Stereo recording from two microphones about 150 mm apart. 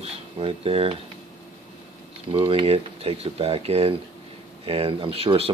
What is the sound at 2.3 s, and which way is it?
Speech, 35° right (ahead or behind).